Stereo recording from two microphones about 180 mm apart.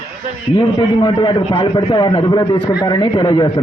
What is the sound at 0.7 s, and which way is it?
A man's voice, 25° left (ahead or behind).